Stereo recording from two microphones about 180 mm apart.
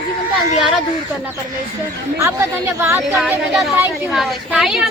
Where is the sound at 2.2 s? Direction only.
15° right (ahead or behind).